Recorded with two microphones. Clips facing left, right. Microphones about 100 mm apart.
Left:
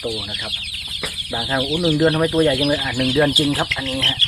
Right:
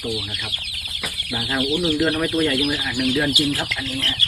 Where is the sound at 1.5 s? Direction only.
35° left (ahead or behind).